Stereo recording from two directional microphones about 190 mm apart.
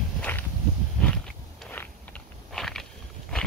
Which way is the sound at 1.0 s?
5° left (ahead or behind).